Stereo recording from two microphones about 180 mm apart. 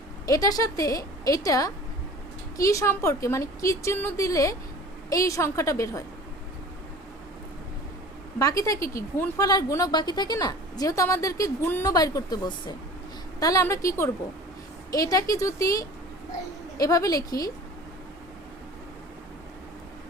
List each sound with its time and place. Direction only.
0.3 s a woman's voice: 20° left (ahead or behind)
8.4 s a woman's voice: 20° left (ahead or behind)